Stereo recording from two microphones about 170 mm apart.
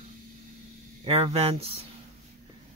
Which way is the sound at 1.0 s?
35° right (ahead or behind).